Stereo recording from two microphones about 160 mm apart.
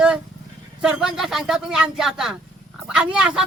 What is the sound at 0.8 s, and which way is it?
A woman's voice, 5° right (ahead or behind).